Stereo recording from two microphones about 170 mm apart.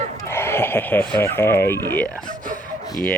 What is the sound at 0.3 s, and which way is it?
Speech, 15° left (ahead or behind).